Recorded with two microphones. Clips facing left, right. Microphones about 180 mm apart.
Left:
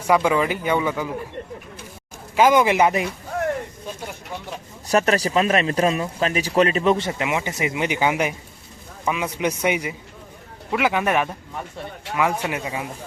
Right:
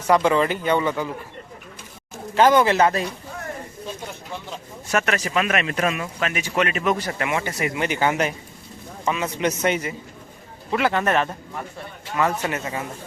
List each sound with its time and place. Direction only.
0.1 s speech: 10° left (ahead or behind)
2.3 s speech: 10° left (ahead or behind)
4.9 s speech: 35° left (ahead or behind); by 12.9 s 10° left (ahead or behind)